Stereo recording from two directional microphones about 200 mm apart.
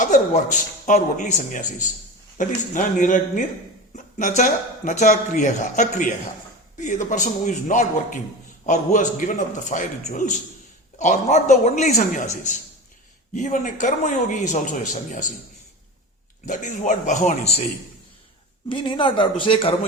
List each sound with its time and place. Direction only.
0.0 s speech: 40° left (ahead or behind)
16.5 s speech: 40° left (ahead or behind)
18.7 s speech: 25° left (ahead or behind)